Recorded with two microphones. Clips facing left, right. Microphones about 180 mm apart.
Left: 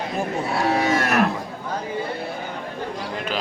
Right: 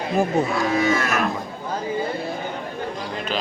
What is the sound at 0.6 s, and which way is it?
Livestock, 65° left (ahead or behind).